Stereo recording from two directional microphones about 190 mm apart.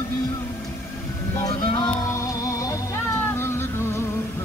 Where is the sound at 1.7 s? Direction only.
20° left (ahead or behind).